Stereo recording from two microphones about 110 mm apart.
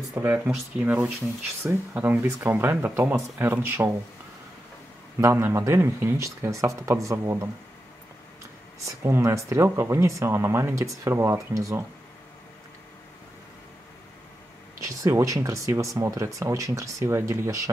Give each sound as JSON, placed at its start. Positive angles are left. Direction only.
{"t": 0.2, "sound": "speech", "side_deg": -15}
{"t": 5.2, "sound": "speech", "side_deg": -25}
{"t": 8.8, "sound": "speech", "side_deg": -25}
{"t": 14.8, "sound": "speech", "side_deg": -30}